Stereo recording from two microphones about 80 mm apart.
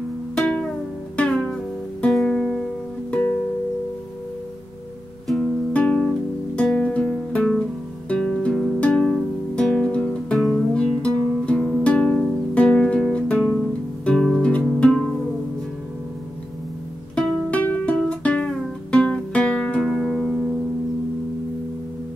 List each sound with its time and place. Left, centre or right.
0.4 s music: centre
3.1 s music: centre
5.7 s music: centre
17.1 s music: centre